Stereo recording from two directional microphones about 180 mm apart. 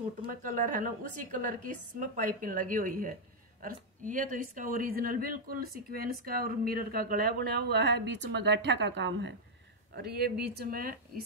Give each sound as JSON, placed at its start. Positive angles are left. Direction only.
{"t": 0.3, "sound": "a woman's voice", "side_deg": -50}
{"t": 9.9, "sound": "a woman's voice", "side_deg": -60}